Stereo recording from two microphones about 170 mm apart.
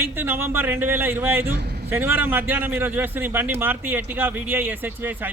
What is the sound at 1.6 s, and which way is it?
Vehicle, 75° right (ahead or behind).